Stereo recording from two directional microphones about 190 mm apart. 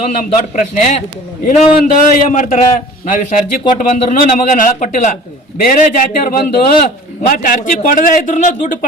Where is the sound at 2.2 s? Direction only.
40° left (ahead or behind).